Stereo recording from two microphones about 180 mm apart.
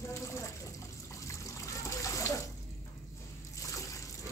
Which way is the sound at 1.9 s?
15° left (ahead or behind).